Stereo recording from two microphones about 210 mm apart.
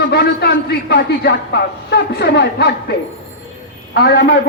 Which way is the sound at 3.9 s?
50° left (ahead or behind).